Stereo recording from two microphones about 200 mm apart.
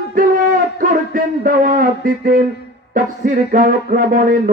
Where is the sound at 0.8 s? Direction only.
45° right (ahead or behind).